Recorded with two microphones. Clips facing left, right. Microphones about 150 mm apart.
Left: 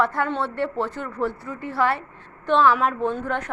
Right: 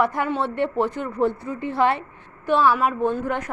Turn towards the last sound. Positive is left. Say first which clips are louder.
# right 2 dB
turn(degrees=-10)  # may be behind; listen again after turning